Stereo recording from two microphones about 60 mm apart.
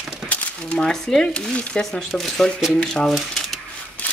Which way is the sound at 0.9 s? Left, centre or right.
Centre.